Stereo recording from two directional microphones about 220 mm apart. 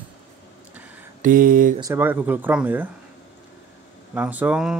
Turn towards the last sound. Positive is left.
turn(degrees=-5)  # may be behind; listen again after turning